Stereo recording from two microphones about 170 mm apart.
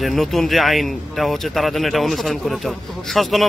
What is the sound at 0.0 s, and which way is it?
Speech, centre (ahead or behind).